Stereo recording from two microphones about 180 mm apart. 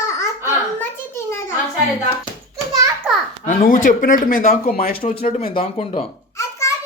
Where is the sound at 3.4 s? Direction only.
45° left (ahead or behind).